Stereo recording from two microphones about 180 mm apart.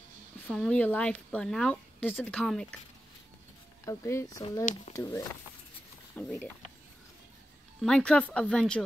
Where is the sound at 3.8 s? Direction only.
15° left (ahead or behind).